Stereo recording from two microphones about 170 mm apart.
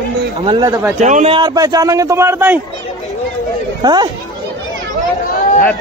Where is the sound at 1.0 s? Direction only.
45° right (ahead or behind).